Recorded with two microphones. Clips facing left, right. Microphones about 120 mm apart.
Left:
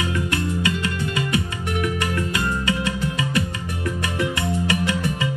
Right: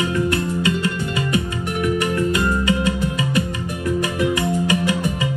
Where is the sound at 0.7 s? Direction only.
30° right (ahead or behind).